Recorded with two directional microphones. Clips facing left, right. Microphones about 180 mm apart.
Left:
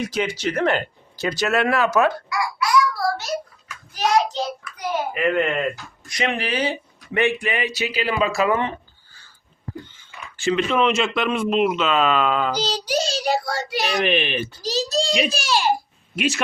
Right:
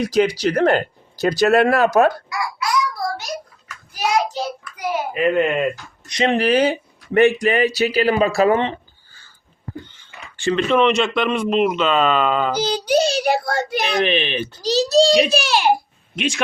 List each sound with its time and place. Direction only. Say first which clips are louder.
0.0 s speech: right 7 dB; 35° right (ahead or behind)
2.6 s child singing: left 2 dB; 15° right (ahead or behind)
4.6 s hands: right 2 dB; 5° right (ahead or behind)
5.1 s speech: right 4 dB; 20° right (ahead or behind)
6.3 s speech: right 8 dB; 45° right (ahead or behind)
10.4 s speech: right 3 dB; 5° left (ahead or behind)
12.5 s a child's voice: right 5 dB; 60° right (ahead or behind)
14.0 s speech: right 1 dB; 10° left (ahead or behind)
14.6 s a child's voice: right 10 dB; 70° right (ahead or behind)
15.3 s a child's voice: right 4 dB; 65° right (ahead or behind)
16.1 s speech: even; 5° left (ahead or behind)